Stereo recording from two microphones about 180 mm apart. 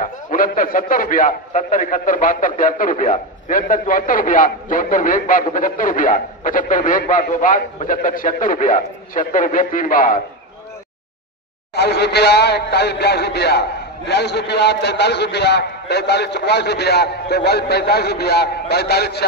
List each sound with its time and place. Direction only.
0.3 s a man's voice: 50° left (ahead or behind)
11.7 s speech: 65° left (ahead or behind)